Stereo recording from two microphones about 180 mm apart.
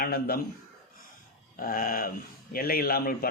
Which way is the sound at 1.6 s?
50° left (ahead or behind).